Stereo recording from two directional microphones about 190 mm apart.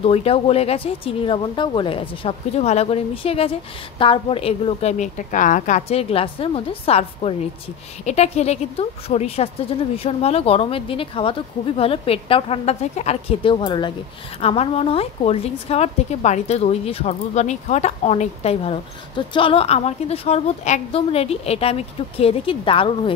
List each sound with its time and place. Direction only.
0.0 s a woman's voice: 30° left (ahead or behind)